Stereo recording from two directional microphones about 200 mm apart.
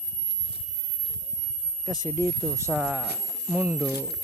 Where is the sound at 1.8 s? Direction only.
5° right (ahead or behind).